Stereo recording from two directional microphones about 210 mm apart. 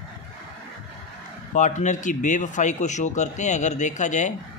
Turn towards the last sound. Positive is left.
turn(degrees=35)  # may be behind; listen again after turning